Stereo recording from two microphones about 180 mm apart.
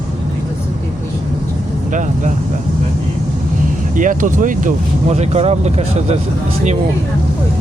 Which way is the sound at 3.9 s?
45° right (ahead or behind).